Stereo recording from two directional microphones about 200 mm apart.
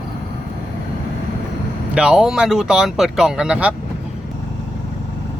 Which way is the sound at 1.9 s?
5° right (ahead or behind).